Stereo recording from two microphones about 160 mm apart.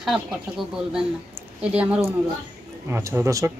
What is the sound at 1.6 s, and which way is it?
Speech, 10° right (ahead or behind).